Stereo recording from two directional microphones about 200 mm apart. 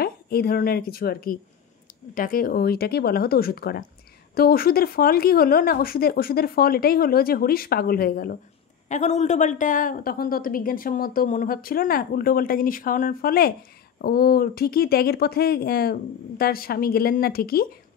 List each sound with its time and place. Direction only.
0.0 s a woman's voice: 50° left (ahead or behind)
8.8 s a woman's voice: 35° left (ahead or behind)